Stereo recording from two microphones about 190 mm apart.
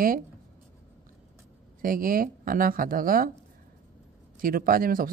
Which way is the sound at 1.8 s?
50° right (ahead or behind).